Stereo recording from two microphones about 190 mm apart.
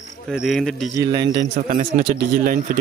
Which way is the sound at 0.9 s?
20° right (ahead or behind).